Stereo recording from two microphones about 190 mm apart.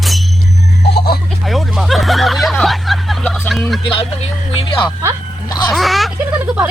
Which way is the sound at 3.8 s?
30° left (ahead or behind).